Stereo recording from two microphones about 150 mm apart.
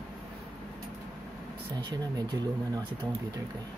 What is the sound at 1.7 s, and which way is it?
Speech, 30° right (ahead or behind).